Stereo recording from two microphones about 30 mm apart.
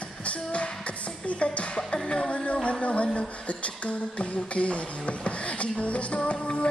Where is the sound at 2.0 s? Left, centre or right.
Left.